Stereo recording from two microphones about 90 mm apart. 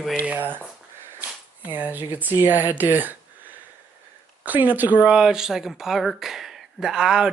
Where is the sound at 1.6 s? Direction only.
20° right (ahead or behind).